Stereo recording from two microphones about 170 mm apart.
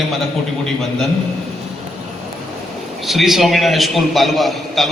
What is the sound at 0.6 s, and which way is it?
Speech, centre (ahead or behind).